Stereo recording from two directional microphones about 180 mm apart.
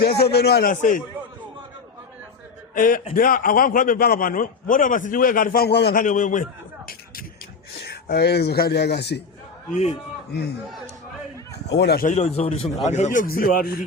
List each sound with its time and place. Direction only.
0.0 s speech: 65° left (ahead or behind); by 1.0 s 45° left (ahead or behind)
2.7 s a man's voice: 50° left (ahead or behind); by 6.0 s 65° left (ahead or behind)
6.0 s a man's voice: 45° left (ahead or behind)
7.8 s a man's voice: 65° left (ahead or behind)
9.6 s a man's voice: 40° left (ahead or behind)
11.7 s speech: 65° left (ahead or behind)
12.0 s a man's voice: 35° left (ahead or behind); by 13.7 s 55° left (ahead or behind)